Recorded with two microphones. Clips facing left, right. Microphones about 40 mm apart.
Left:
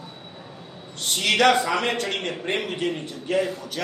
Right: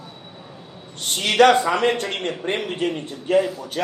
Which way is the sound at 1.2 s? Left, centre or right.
Right.